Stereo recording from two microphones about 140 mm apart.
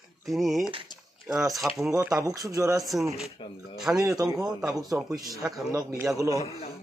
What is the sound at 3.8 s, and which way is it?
Speech, 5° right (ahead or behind).